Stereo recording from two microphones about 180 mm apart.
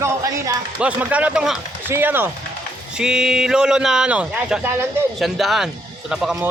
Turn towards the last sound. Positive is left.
turn(degrees=-5)  # may be behind; listen again after turning